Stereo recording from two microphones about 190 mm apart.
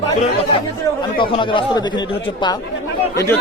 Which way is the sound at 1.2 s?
25° left (ahead or behind).